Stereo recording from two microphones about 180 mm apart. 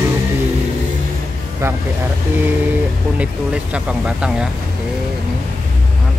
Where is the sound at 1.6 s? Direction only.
15° right (ahead or behind).